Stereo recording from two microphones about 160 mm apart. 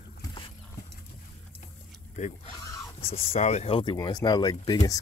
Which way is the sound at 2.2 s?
50° left (ahead or behind).